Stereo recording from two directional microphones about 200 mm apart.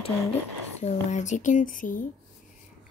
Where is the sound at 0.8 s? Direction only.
35° left (ahead or behind).